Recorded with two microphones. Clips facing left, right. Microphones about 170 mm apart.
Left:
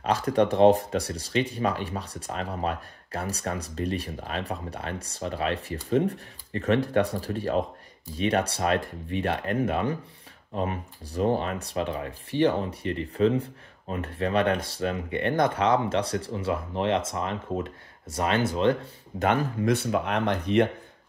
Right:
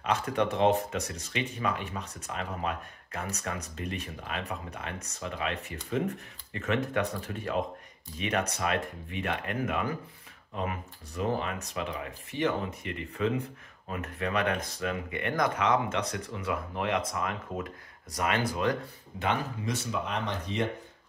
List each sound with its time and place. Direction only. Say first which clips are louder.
0.0 s speech: left 5 dB; 35° left (ahead or behind)
19.1 s speech: left 6 dB; 55° left (ahead or behind)